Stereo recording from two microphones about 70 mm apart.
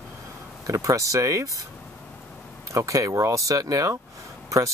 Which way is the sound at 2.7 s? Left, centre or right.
Right.